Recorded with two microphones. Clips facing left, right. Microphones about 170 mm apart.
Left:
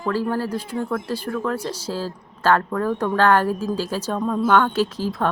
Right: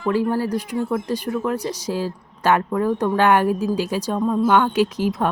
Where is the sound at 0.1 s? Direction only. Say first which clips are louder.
Right 3 dB; 15° right (ahead or behind).